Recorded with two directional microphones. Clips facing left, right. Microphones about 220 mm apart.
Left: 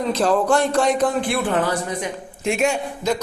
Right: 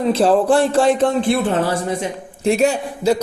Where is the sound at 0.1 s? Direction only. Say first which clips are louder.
Right 4 dB; 30° right (ahead or behind).